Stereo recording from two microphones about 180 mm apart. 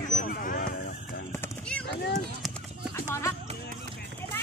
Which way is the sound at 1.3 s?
5° left (ahead or behind).